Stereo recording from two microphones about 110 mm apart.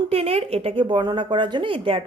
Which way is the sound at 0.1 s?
60° right (ahead or behind).